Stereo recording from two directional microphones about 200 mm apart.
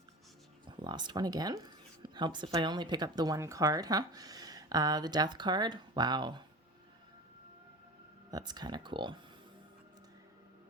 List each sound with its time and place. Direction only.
0.8 s speech: 20° right (ahead or behind)
8.3 s speech: 20° right (ahead or behind)